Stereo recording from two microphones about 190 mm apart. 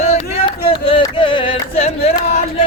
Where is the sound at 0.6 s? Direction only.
30° left (ahead or behind).